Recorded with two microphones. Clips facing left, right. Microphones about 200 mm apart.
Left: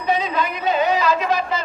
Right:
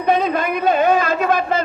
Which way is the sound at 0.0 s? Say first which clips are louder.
Right 4 dB; 55° right (ahead or behind).